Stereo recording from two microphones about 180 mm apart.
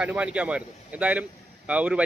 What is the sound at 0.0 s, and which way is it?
Speech, 5° right (ahead or behind).